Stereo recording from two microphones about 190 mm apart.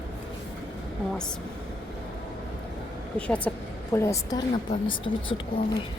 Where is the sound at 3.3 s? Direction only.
10° left (ahead or behind); by 5.1 s 25° left (ahead or behind).